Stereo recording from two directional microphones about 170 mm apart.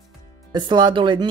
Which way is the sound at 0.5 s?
25° right (ahead or behind).